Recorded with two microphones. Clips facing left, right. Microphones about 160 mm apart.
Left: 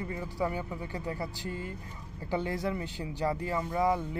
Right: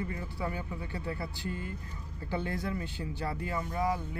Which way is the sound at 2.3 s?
20° left (ahead or behind).